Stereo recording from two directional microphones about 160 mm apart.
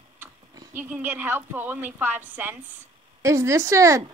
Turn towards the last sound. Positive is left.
turn(degrees=-20)  # may be behind; listen again after turning